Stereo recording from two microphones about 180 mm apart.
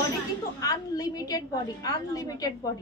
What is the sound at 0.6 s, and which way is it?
A woman's voice, 20° left (ahead or behind).